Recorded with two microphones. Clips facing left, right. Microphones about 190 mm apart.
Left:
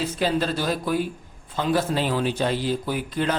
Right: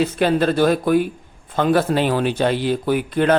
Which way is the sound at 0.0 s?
60° right (ahead or behind).